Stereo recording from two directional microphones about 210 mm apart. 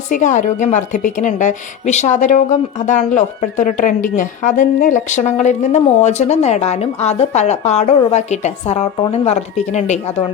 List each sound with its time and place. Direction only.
0.1 s a woman's voice: 35° left (ahead or behind)